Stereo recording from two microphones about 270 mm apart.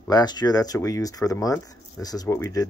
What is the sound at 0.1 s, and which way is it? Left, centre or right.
Speech, centre.